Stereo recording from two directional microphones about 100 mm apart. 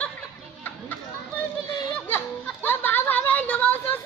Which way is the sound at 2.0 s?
20° left (ahead or behind).